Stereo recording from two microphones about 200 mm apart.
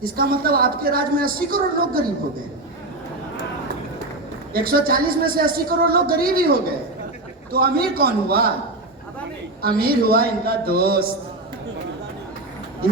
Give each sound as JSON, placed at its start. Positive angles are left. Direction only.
{"t": 0.0, "sound": "speech", "side_deg": -45}
{"t": 4.5, "sound": "speech", "side_deg": -50}
{"t": 9.6, "sound": "speech", "side_deg": -50}